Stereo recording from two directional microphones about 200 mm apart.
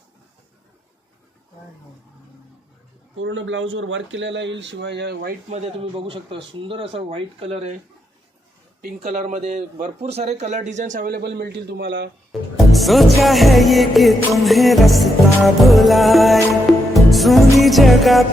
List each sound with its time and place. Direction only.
3.2 s speech: 70° right (ahead or behind)
5.5 s speech: 35° right (ahead or behind)
9.0 s speech: 35° right (ahead or behind); by 12.1 s 60° right (ahead or behind)
12.3 s music: centre (ahead or behind)